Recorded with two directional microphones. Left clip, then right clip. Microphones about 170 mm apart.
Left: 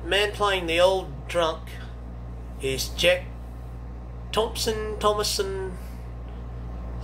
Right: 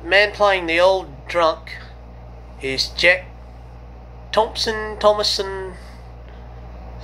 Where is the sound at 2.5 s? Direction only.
45° right (ahead or behind).